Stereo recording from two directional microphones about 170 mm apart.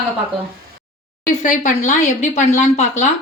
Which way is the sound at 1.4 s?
50° left (ahead or behind).